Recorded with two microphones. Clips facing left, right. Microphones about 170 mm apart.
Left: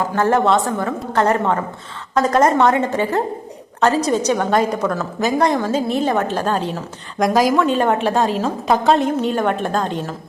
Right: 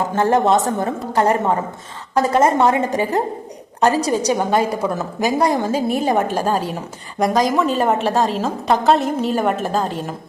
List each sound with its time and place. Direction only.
0.1 s a woman's voice: 20° right (ahead or behind); by 10.2 s 5° right (ahead or behind)